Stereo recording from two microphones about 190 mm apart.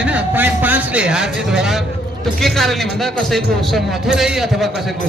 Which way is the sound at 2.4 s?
Centre (ahead or behind).